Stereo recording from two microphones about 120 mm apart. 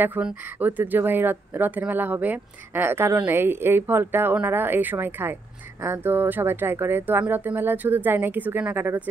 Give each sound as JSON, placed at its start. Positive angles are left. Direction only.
{"t": 0.0, "sound": "speech", "side_deg": -15}